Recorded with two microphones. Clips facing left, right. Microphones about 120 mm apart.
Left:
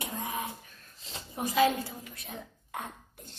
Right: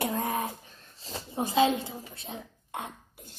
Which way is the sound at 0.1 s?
45° right (ahead or behind).